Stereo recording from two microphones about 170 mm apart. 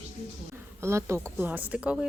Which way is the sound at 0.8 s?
15° right (ahead or behind).